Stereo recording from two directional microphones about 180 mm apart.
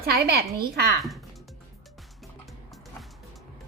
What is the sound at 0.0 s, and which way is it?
Speech, 60° right (ahead or behind).